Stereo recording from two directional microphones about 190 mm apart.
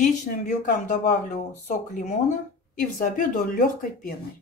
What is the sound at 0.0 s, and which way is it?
Speech, 40° left (ahead or behind).